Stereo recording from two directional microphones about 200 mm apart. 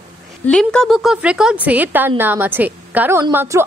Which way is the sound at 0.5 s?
5° left (ahead or behind).